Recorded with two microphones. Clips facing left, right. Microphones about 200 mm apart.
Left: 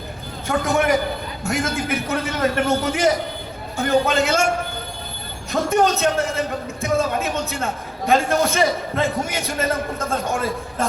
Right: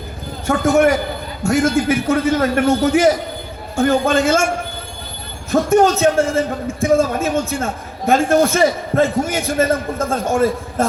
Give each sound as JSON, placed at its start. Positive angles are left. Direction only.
{"t": 0.4, "sound": "a man's voice", "side_deg": -45}
{"t": 5.5, "sound": "a man's voice", "side_deg": -50}